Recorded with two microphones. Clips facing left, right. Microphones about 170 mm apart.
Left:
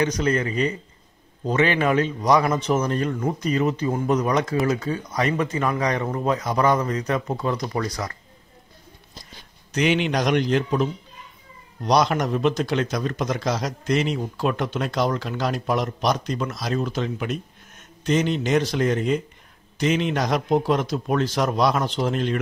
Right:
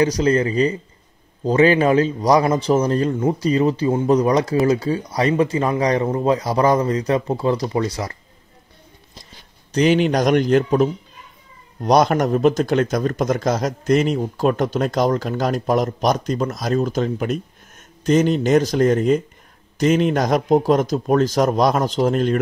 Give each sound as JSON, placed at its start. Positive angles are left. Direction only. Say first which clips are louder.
{"t": 0.0, "sound": "a man's voice", "louder": "right 5 dB", "side_deg": -35}
{"t": 9.2, "sound": "a man's voice", "louder": "even", "side_deg": -35}